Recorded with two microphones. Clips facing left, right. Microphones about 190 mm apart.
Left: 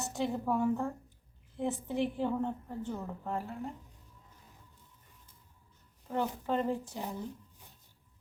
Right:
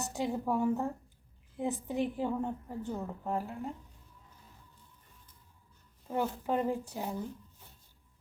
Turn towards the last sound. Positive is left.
turn(degrees=-15)  # may be behind; listen again after turning